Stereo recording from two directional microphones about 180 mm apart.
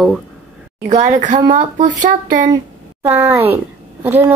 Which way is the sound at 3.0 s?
10° right (ahead or behind).